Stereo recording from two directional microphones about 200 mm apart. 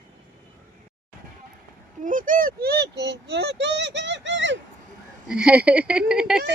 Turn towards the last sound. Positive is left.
turn(degrees=-5)  # may be behind; listen again after turning